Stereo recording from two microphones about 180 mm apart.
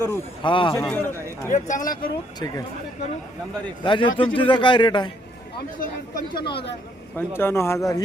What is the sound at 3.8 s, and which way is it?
Speech, 25° left (ahead or behind).